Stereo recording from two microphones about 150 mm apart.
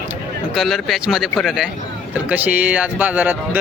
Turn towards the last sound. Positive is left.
turn(degrees=-10)  # may be behind; listen again after turning